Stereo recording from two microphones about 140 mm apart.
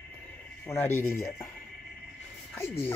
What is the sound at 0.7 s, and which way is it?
Speech, 15° left (ahead or behind).